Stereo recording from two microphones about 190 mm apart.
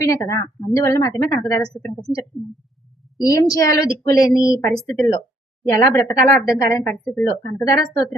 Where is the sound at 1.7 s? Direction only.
5° left (ahead or behind).